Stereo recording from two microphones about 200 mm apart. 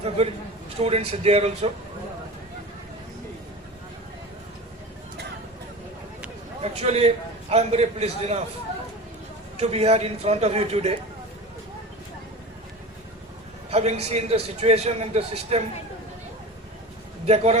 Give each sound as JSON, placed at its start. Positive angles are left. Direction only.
{"t": 0.2, "sound": "a man's voice", "side_deg": -30}
{"t": 6.6, "sound": "a man's voice", "side_deg": -30}
{"t": 9.6, "sound": "a man's voice", "side_deg": -30}
{"t": 13.7, "sound": "a man's voice", "side_deg": -30}
{"t": 17.2, "sound": "a man's voice", "side_deg": -30}